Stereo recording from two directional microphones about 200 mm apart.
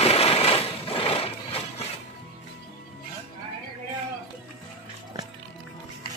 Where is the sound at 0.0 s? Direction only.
30° left (ahead or behind).